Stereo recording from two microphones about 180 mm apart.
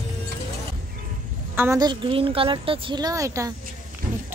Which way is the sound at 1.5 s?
10° right (ahead or behind).